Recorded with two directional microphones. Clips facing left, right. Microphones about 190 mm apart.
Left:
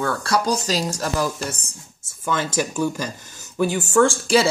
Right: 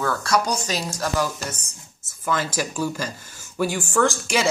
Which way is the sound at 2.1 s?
25° left (ahead or behind).